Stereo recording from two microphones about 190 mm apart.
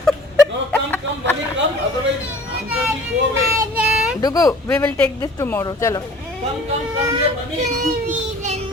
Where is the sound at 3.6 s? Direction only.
5° right (ahead or behind).